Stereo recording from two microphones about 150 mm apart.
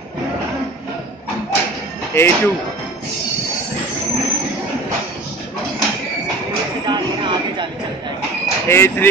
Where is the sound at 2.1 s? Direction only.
15° left (ahead or behind).